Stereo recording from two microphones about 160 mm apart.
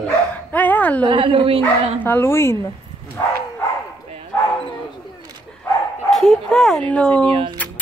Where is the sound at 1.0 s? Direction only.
35° right (ahead or behind).